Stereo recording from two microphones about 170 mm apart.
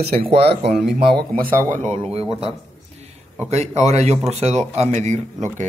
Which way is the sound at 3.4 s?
40° right (ahead or behind).